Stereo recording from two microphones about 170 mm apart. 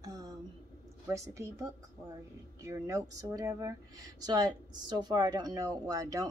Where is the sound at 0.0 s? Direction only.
20° right (ahead or behind).